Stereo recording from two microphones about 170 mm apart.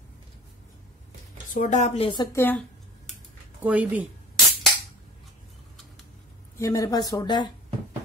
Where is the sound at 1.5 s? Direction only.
45° left (ahead or behind); by 2.3 s 30° left (ahead or behind).